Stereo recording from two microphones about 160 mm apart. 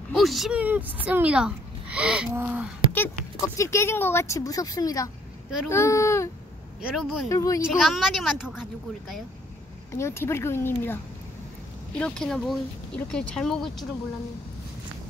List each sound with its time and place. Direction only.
0.1 s speech: centre (ahead or behind)
2.9 s speech: 15° left (ahead or behind)
6.8 s speech: 5° right (ahead or behind)
7.2 s speech: 20° left (ahead or behind)
7.8 s speech: centre (ahead or behind)
9.9 s speech: 15° left (ahead or behind)
12.0 s speech: 5° left (ahead or behind)